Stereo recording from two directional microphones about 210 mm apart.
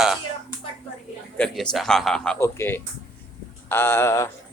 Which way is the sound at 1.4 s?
5° left (ahead or behind).